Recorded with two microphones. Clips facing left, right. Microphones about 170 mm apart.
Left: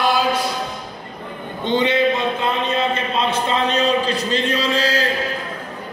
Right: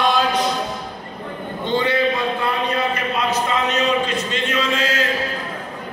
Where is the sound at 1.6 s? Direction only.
20° left (ahead or behind); by 5.0 s 35° left (ahead or behind).